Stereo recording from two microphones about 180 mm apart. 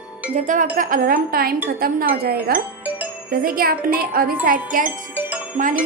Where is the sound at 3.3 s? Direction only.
55° right (ahead or behind).